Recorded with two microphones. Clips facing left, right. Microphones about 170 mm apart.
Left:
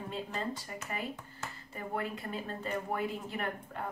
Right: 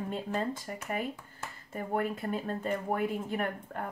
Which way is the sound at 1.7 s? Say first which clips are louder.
Right 5 dB; 50° right (ahead or behind).